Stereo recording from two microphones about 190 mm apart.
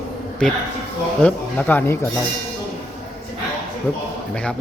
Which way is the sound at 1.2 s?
10° left (ahead or behind).